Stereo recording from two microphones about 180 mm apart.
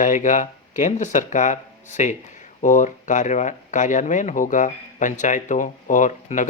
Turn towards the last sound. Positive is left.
turn(degrees=40)  # may be behind; listen again after turning